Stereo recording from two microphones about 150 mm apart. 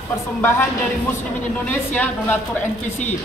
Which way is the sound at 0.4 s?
15° left (ahead or behind).